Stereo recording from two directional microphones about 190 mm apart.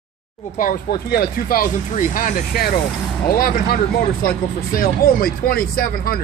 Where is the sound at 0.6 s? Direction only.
50° left (ahead or behind).